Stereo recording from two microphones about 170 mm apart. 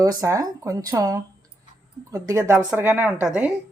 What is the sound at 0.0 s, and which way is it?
A woman's voice, 20° right (ahead or behind).